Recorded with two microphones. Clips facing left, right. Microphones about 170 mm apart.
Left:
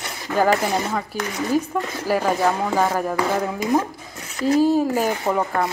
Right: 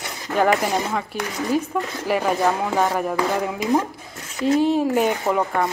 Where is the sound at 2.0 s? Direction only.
Centre (ahead or behind).